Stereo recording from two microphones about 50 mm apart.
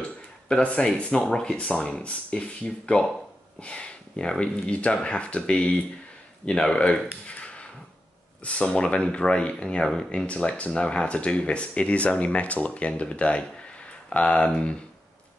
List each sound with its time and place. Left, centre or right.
0.5 s speech: left
7.2 s a sound: left
8.5 s speech: left